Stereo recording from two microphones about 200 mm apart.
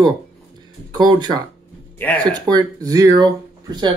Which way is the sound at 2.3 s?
20° right (ahead or behind).